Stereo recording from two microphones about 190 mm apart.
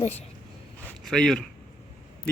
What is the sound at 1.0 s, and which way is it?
Speech, 5° left (ahead or behind).